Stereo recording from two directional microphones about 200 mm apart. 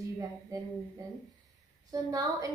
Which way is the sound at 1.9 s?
15° right (ahead or behind).